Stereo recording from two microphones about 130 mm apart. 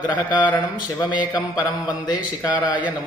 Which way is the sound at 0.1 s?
35° left (ahead or behind).